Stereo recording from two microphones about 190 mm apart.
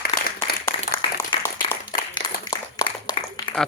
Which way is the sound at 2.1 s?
25° left (ahead or behind).